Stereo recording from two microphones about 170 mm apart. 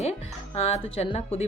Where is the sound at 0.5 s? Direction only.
35° left (ahead or behind).